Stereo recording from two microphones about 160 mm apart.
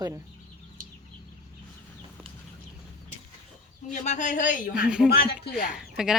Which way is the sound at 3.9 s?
50° left (ahead or behind).